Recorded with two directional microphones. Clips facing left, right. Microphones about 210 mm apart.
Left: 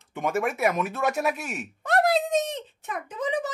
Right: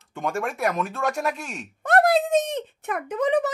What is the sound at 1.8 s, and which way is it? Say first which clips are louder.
Speech: right 3 dB; 50° right (ahead or behind).